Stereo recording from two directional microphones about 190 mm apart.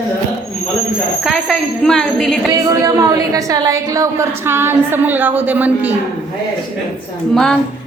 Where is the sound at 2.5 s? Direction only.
20° right (ahead or behind).